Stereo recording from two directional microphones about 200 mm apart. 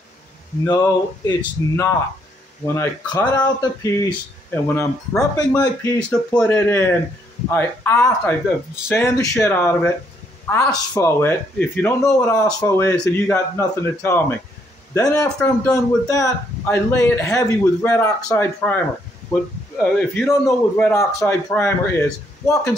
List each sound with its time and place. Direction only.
0.7 s a man's voice: 20° left (ahead or behind)
5.5 s a man's voice: 15° left (ahead or behind)
19.8 s a man's voice: 10° left (ahead or behind)